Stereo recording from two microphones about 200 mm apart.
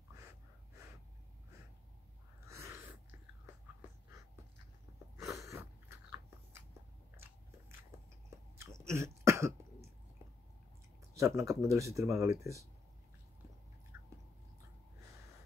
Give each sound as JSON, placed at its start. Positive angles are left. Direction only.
{"t": 2.4, "sound": "a sound", "side_deg": -15}
{"t": 5.2, "sound": "sneeze", "side_deg": -15}
{"t": 8.5, "sound": "cough", "side_deg": -15}
{"t": 11.1, "sound": "speech", "side_deg": -15}
{"t": 13.9, "sound": "chewing", "side_deg": -15}